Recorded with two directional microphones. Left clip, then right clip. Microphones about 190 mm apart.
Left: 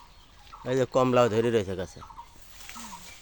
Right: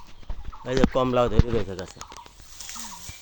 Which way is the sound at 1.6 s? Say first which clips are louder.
Left 1 dB; 15° left (ahead or behind).